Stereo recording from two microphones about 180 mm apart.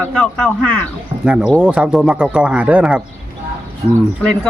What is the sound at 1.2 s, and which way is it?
Speech, 5° right (ahead or behind).